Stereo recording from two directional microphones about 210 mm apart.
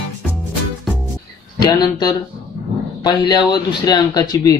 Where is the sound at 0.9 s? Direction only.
Centre (ahead or behind).